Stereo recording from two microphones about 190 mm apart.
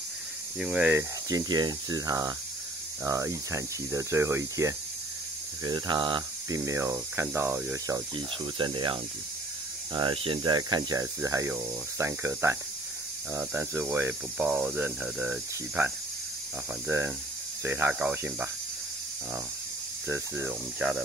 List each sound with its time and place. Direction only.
0.6 s speech: 5° right (ahead or behind)
3.0 s cricket: 15° right (ahead or behind)
8.5 s speech: 25° right (ahead or behind)
9.9 s cricket: 25° right (ahead or behind); by 18.5 s 10° right (ahead or behind)
20.1 s cricket: 10° right (ahead or behind)